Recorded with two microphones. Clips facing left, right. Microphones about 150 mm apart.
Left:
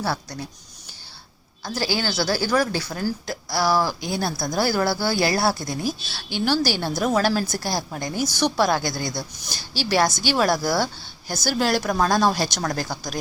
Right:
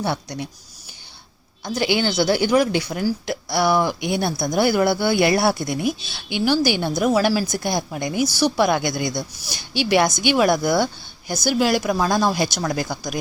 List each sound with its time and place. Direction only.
0.0 s speech: 20° right (ahead or behind)
1.6 s speech: 20° right (ahead or behind)